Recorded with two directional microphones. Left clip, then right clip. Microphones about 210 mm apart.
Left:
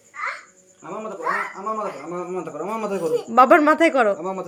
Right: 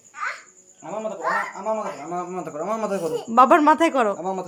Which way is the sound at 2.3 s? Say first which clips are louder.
Left 2 dB; 15° right (ahead or behind).